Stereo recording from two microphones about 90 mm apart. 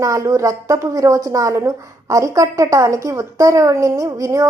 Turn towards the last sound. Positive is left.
turn(degrees=-40)  # may be behind; listen again after turning